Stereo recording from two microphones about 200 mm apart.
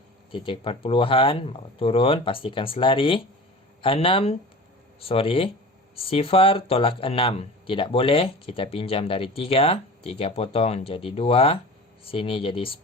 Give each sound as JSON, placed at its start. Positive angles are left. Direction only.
{"t": 0.3, "sound": "speech", "side_deg": 25}